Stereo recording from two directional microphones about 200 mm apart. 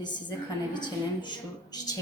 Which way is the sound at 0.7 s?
20° left (ahead or behind).